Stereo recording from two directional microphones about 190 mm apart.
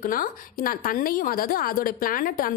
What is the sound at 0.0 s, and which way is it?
A woman's voice, 50° left (ahead or behind).